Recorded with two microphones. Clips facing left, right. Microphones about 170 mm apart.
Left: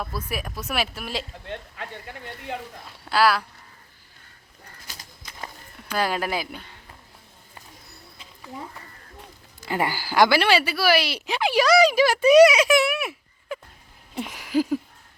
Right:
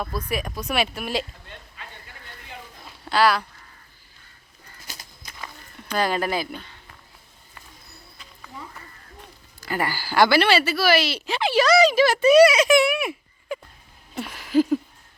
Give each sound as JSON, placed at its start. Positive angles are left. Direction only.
{"t": 0.0, "sound": "speech", "side_deg": 5}
{"t": 1.5, "sound": "speech", "side_deg": 65}
{"t": 3.1, "sound": "speech", "side_deg": 5}
{"t": 5.9, "sound": "speech", "side_deg": 5}
{"t": 9.6, "sound": "speech", "side_deg": 20}
{"t": 14.2, "sound": "a sound", "side_deg": 15}